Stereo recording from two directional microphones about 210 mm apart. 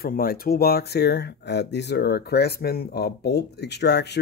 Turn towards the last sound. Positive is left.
turn(degrees=55)  # may be behind; listen again after turning